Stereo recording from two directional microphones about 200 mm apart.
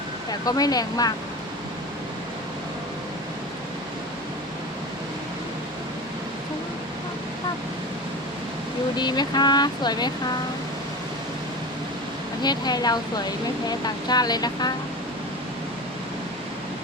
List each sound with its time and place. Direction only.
0.3 s speech: 20° left (ahead or behind)
9.0 s speech: 20° left (ahead or behind)
12.4 s speech: 20° left (ahead or behind)